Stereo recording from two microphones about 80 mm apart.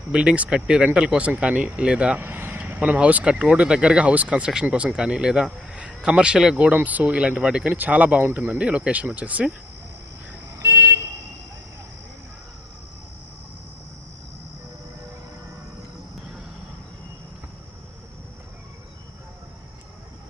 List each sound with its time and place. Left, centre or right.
0.1 s speech: centre
2.2 s speech: right
10.6 s vehicle: right